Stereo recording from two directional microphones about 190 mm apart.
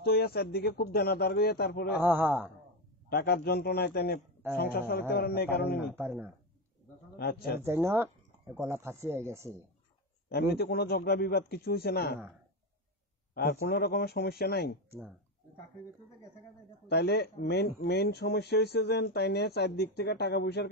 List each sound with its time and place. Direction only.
0.0 s speech: 55° left (ahead or behind)
2.0 s speech: 10° right (ahead or behind)
3.1 s speech: 55° left (ahead or behind)
5.9 s speech: 10° right (ahead or behind)
7.2 s a man's voice: 55° left (ahead or behind)
7.6 s speech: 10° right (ahead or behind)
10.3 s speech: 55° left (ahead or behind)
13.3 s speech: 50° left (ahead or behind)
16.8 s speech: 60° left (ahead or behind)